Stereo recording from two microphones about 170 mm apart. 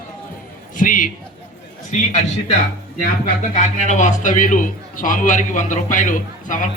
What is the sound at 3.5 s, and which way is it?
A man's voice, 45° left (ahead or behind).